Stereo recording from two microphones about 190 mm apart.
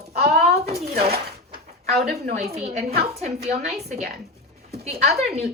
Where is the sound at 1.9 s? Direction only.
55° right (ahead or behind).